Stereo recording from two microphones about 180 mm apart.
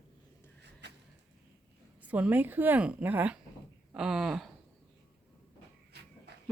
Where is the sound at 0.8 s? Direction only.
70° right (ahead or behind).